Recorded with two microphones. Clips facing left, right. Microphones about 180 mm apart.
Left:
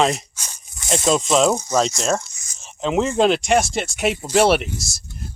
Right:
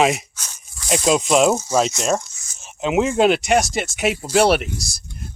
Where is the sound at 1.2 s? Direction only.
5° right (ahead or behind).